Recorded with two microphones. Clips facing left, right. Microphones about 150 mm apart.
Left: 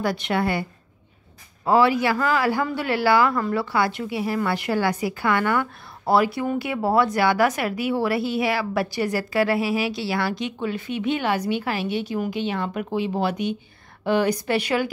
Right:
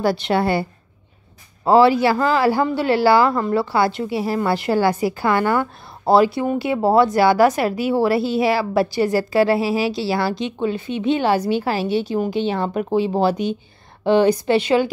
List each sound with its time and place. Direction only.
0.0 s a woman's voice: 30° right (ahead or behind)